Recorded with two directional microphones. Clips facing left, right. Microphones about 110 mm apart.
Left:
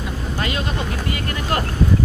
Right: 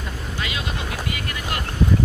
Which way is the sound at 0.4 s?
45° left (ahead or behind).